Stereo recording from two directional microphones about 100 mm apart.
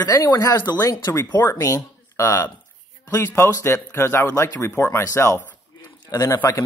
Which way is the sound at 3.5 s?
30° left (ahead or behind).